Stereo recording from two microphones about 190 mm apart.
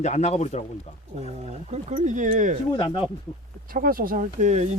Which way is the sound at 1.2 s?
35° right (ahead or behind).